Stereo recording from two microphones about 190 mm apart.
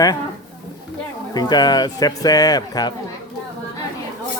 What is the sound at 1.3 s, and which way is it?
Speech, 20° left (ahead or behind).